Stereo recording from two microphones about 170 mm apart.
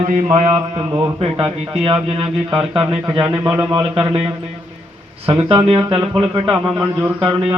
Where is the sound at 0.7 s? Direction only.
25° right (ahead or behind).